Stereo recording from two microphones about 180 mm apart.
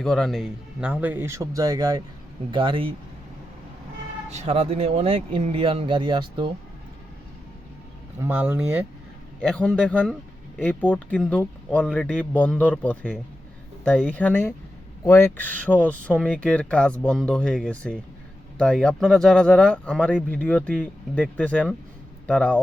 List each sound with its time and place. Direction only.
0.0 s speech: 5° left (ahead or behind); by 2.9 s 30° right (ahead or behind)
4.3 s speech: 35° right (ahead or behind)
8.2 s speech: 10° right (ahead or behind)
9.4 s speech: 5° left (ahead or behind)